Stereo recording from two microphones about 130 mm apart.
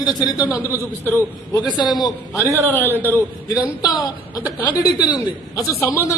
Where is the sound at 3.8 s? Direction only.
30° left (ahead or behind).